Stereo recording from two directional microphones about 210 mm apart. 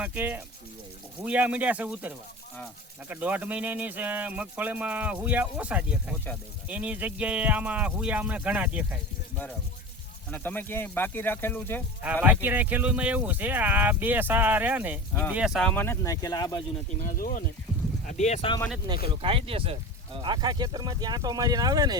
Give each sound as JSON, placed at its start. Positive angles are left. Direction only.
{"t": 0.0, "sound": "speech", "side_deg": -10}
{"t": 10.3, "sound": "speech", "side_deg": 10}
{"t": 12.0, "sound": "speech", "side_deg": -10}
{"t": 17.0, "sound": "speech", "side_deg": 40}
{"t": 18.2, "sound": "speech", "side_deg": 30}
{"t": 18.9, "sound": "speech", "side_deg": -20}